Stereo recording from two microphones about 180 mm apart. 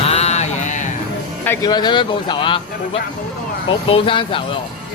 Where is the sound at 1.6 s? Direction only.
25° left (ahead or behind).